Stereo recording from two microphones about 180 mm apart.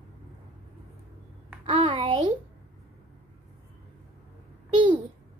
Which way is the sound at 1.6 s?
30° right (ahead or behind).